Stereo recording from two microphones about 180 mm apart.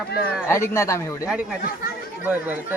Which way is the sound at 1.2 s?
5° right (ahead or behind).